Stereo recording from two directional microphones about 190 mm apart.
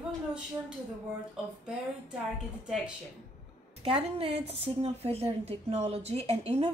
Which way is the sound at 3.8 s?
30° right (ahead or behind).